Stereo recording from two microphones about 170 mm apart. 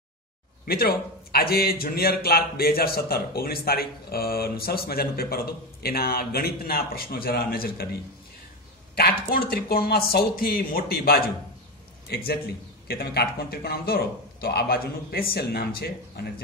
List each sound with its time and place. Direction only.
0.7 s a man's voice: 65° left (ahead or behind)
8.9 s a man's voice: 60° left (ahead or behind)